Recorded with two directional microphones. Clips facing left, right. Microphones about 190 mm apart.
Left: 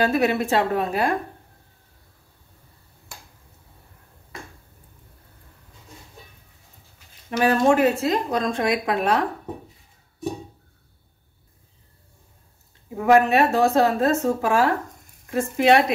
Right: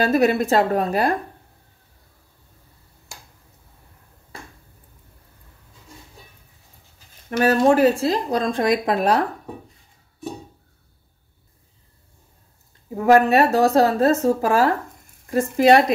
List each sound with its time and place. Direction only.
0.0 s a woman's voice: 40° right (ahead or behind)
7.2 s a woman's voice: 45° right (ahead or behind)
13.0 s a woman's voice: 40° right (ahead or behind)